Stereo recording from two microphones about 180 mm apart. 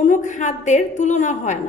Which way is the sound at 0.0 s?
45° left (ahead or behind).